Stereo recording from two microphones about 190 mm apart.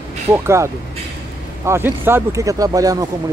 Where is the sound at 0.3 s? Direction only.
15° right (ahead or behind).